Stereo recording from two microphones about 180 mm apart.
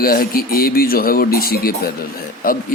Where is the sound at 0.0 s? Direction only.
55° left (ahead or behind).